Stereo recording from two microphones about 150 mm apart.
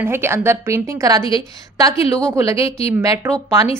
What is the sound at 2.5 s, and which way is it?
Speech, 40° left (ahead or behind).